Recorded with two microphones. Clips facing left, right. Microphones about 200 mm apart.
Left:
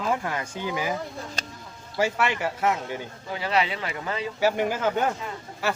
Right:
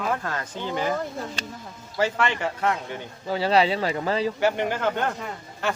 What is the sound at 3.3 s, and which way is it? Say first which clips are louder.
Speech: right 5 dB; 35° right (ahead or behind).